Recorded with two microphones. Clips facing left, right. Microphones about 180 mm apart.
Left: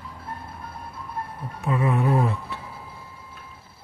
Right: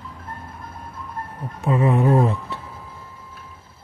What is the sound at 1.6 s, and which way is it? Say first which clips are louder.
Music: right 4 dB; 30° right (ahead or behind).